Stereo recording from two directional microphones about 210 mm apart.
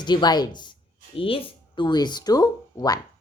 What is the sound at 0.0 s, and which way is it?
Speech, 20° left (ahead or behind).